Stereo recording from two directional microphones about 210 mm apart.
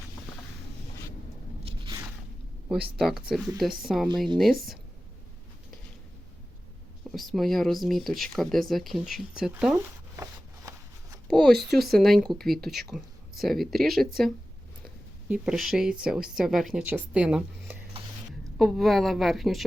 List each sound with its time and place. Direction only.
1.6 s a sound: 25° right (ahead or behind)
3.0 s speech: centre (ahead or behind)
7.1 s speech: centre (ahead or behind)
11.3 s speech: centre (ahead or behind)
15.3 s speech: 5° right (ahead or behind)